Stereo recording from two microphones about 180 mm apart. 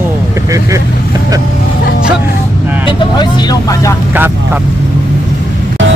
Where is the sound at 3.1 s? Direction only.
20° left (ahead or behind).